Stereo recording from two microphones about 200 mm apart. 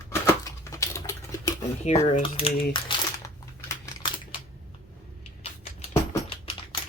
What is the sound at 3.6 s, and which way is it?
Crumpling, 20° left (ahead or behind).